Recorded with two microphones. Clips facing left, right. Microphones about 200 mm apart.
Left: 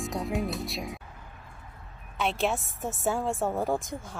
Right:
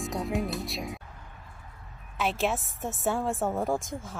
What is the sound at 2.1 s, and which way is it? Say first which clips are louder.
A woman's voice: even; centre (ahead or behind).